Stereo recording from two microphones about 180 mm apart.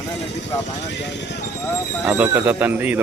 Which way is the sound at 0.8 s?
70° left (ahead or behind).